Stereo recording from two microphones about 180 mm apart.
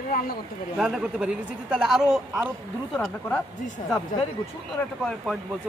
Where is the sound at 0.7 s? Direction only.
5° right (ahead or behind).